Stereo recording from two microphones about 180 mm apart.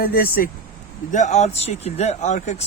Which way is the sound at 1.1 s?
40° left (ahead or behind).